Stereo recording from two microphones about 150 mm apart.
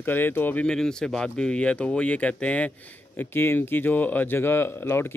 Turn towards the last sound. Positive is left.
turn(degrees=15)  # may be behind; listen again after turning